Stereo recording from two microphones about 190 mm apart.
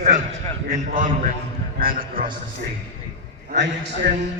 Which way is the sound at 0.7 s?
45° right (ahead or behind).